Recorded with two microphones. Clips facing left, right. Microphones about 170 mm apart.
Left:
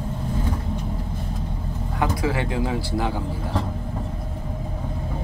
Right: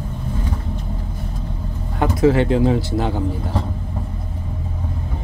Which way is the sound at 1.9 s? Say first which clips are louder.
Right 8 dB; 25° right (ahead or behind).